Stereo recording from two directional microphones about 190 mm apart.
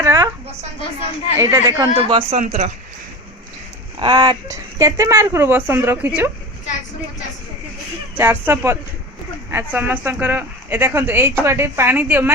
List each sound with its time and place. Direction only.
0.0 s a sound: 15° right (ahead or behind)
1.4 s speech: 15° right (ahead or behind)
2.0 s speech: 30° right (ahead or behind)
4.0 s speech: 20° right (ahead or behind)
8.1 s speech: 10° right (ahead or behind)